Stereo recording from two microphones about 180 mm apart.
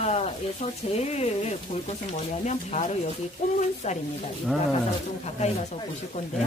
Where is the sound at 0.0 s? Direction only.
35° left (ahead or behind).